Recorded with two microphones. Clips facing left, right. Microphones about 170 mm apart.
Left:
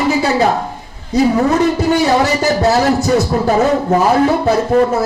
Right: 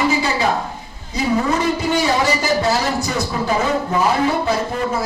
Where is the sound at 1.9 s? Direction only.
40° left (ahead or behind).